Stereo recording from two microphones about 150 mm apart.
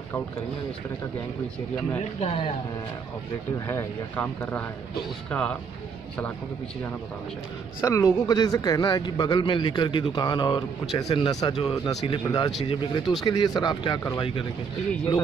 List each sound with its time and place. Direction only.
2.1 s speech: 40° left (ahead or behind)
3.5 s speech: 20° left (ahead or behind)
7.8 s speech: 20° left (ahead or behind)